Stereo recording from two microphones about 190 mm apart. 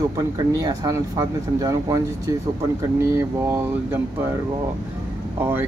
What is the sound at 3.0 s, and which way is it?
Mantra, 15° right (ahead or behind).